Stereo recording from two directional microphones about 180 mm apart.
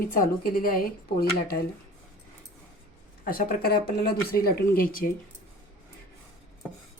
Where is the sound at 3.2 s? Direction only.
50° left (ahead or behind).